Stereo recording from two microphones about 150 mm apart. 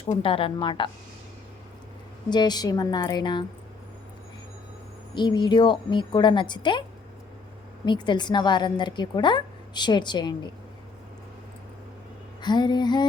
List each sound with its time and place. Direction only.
0.0 s speech: 40° left (ahead or behind)
2.3 s a woman's voice: 30° left (ahead or behind)
5.1 s speech: 30° left (ahead or behind)
7.9 s a woman's voice: 30° left (ahead or behind)
12.4 s a woman's voice: 30° left (ahead or behind)